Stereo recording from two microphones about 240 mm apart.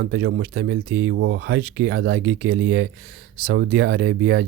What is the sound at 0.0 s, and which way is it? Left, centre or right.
Speech, right.